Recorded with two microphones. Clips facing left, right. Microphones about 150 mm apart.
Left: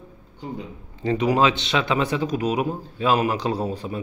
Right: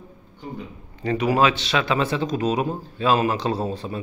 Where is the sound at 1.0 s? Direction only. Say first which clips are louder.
Even; 20° left (ahead or behind).